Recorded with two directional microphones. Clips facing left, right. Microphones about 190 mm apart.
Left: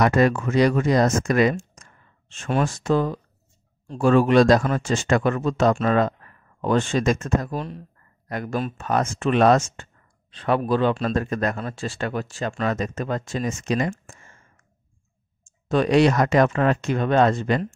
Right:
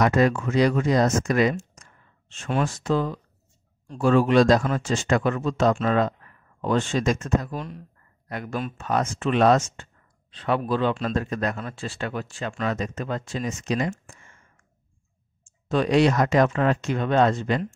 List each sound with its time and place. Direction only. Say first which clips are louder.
0.0 s speech: left 2 dB; 60° left (ahead or behind); by 14.4 s 45° left (ahead or behind)
15.4 s speech: left 2 dB; 50° left (ahead or behind)